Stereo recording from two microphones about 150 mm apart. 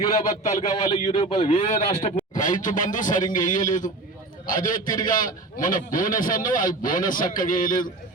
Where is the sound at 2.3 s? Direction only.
60° left (ahead or behind).